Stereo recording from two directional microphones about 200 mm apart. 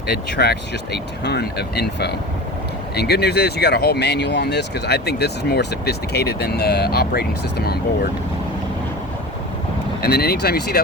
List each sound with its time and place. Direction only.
0.3 s speech: 55° left (ahead or behind)
10.0 s speech: 50° left (ahead or behind)